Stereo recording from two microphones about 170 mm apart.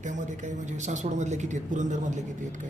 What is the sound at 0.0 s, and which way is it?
Speech, 45° right (ahead or behind).